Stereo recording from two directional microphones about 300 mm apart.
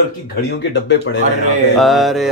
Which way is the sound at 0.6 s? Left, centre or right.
Left.